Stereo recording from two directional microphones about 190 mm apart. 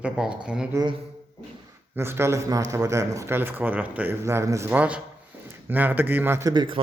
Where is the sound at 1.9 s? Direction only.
10° right (ahead or behind).